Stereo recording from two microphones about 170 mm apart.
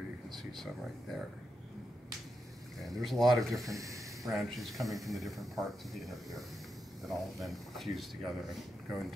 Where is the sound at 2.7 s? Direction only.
Centre (ahead or behind).